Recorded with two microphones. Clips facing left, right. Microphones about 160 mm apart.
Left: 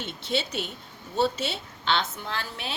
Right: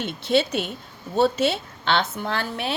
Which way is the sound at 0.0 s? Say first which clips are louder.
Right 8 dB; 60° right (ahead or behind).